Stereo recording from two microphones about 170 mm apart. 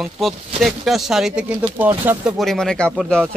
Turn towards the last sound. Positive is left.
turn(degrees=-5)  # may be behind; listen again after turning